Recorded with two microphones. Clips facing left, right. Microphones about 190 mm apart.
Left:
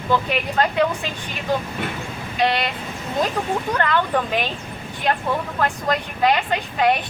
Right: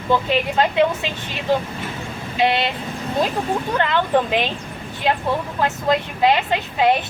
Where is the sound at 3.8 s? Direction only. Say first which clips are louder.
Right 4 dB; 20° right (ahead or behind).